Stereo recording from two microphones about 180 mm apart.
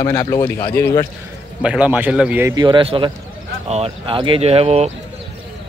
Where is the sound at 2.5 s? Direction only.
25° right (ahead or behind).